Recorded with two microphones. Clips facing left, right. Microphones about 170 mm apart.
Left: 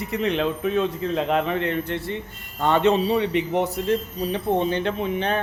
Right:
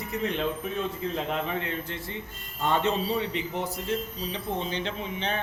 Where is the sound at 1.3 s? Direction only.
65° left (ahead or behind).